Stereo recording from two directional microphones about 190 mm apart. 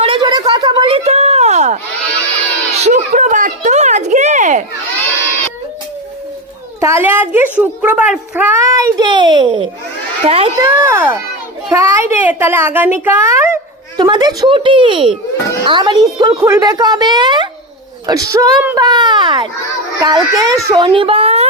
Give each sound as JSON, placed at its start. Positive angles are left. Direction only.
{"t": 0.0, "sound": "a sound", "side_deg": -25}
{"t": 2.7, "sound": "speech", "side_deg": -35}
{"t": 6.7, "sound": "a woman's voice", "side_deg": -15}
{"t": 10.6, "sound": "a woman's voice", "side_deg": -15}